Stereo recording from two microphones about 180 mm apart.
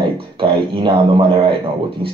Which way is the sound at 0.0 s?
30° right (ahead or behind).